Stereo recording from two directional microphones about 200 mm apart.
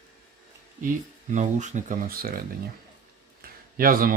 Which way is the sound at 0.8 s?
40° right (ahead or behind).